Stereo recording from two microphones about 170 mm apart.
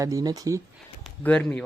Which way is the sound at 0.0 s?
20° right (ahead or behind).